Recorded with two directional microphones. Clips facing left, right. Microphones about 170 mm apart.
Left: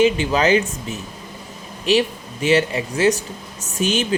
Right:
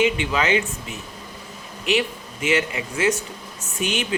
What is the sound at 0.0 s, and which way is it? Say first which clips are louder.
Speech: left 5 dB; 35° left (ahead or behind).